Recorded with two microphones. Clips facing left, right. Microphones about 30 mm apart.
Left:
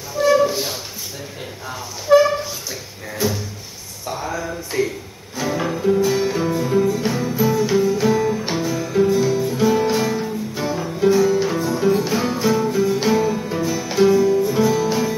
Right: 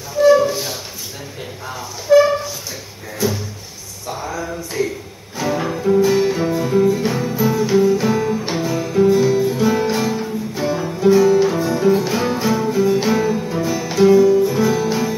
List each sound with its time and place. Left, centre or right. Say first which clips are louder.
0.2 s flute: right 3 dB; centre
2.1 s a sound: right 1 dB; centre
4.2 s music: right 1 dB; centre
5.4 s music: right 1 dB; centre